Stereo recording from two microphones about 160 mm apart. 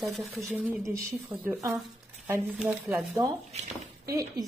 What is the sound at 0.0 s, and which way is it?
Speech, centre (ahead or behind).